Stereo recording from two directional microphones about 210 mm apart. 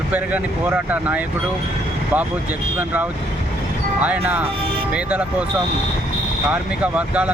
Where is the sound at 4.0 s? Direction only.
5° right (ahead or behind).